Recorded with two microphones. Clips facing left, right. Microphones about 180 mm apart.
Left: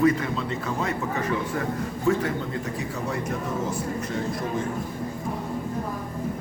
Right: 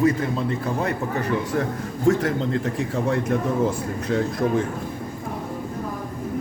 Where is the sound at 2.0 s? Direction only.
90° right.